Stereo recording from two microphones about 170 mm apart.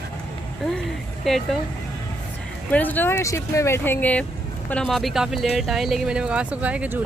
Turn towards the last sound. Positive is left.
turn(degrees=-10)  # may be behind; listen again after turning